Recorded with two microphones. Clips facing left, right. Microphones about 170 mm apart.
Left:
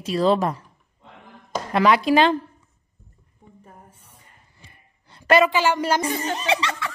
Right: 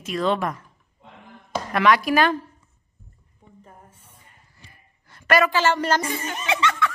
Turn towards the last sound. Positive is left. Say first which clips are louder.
# right 1 dB
turn(degrees=35)  # may be behind; listen again after turning